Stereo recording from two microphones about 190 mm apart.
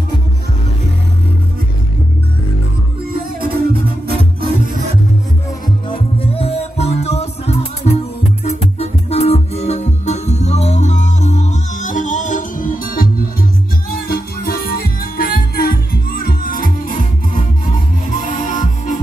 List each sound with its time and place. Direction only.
3.1 s music: 50° right (ahead or behind)
5.9 s music: 30° left (ahead or behind)